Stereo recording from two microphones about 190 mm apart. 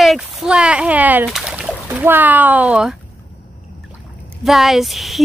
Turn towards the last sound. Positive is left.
turn(degrees=0)  # may be behind; listen again after turning